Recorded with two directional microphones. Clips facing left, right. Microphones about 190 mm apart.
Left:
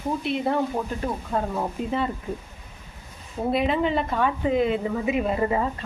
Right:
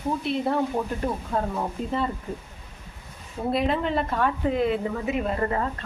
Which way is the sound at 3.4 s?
Centre (ahead or behind).